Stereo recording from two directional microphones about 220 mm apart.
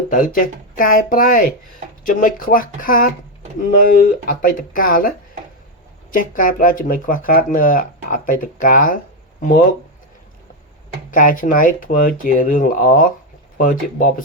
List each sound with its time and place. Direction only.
0.1 s speech: 35° left (ahead or behind)
11.1 s speech: 40° left (ahead or behind)